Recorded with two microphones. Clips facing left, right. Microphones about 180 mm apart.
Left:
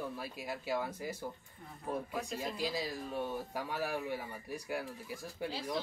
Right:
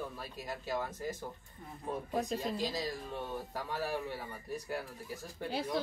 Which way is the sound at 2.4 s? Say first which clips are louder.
Right 1 dB; 10° left (ahead or behind).